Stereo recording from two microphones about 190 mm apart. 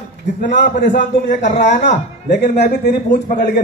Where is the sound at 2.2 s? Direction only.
60° left (ahead or behind).